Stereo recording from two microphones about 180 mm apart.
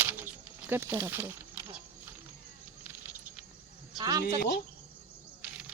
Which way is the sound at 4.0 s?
20° right (ahead or behind).